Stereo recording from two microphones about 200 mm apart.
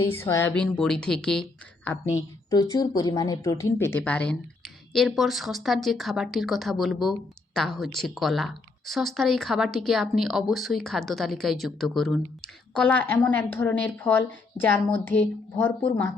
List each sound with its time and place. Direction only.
0.1 s speech: 10° left (ahead or behind)
2.7 s a woman's voice: 20° left (ahead or behind)